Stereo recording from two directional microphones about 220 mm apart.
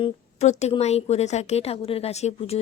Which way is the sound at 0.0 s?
30° left (ahead or behind).